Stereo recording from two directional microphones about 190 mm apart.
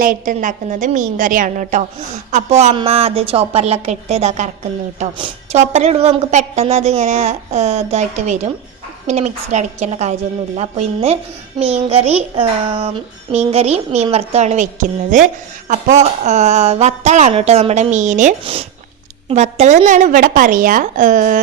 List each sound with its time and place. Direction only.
0.0 s a woman's voice: 45° right (ahead or behind)